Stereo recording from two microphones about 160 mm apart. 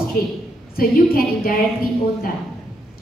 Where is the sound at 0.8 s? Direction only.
65° left (ahead or behind).